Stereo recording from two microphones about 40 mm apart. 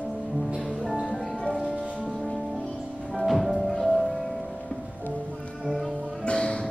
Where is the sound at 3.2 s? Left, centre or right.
Centre.